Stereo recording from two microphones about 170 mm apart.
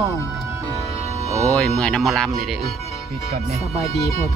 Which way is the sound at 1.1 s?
20° right (ahead or behind).